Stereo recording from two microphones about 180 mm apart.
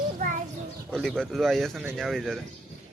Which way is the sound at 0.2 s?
45° right (ahead or behind).